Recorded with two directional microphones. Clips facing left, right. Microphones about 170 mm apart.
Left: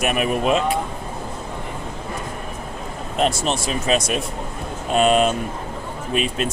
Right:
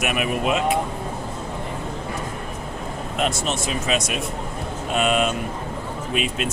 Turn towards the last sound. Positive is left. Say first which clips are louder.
# left 2 dB
turn(degrees=40)  # may be behind; listen again after turning